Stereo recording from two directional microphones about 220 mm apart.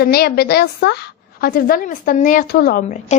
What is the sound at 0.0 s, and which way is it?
A woman's voice, 45° left (ahead or behind).